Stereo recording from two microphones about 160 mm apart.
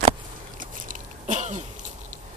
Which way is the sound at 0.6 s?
55° right (ahead or behind).